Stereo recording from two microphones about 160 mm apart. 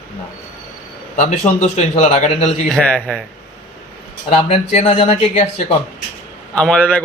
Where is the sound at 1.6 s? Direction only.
45° left (ahead or behind).